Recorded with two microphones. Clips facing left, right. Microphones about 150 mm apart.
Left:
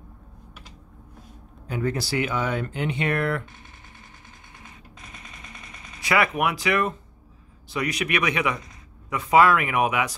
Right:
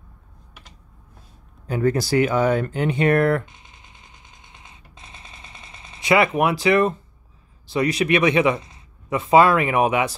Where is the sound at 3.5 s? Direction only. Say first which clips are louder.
Left 1 dB; 20° right (ahead or behind).